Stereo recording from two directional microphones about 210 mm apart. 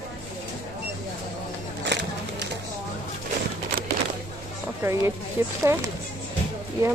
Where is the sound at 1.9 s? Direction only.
55° right (ahead or behind).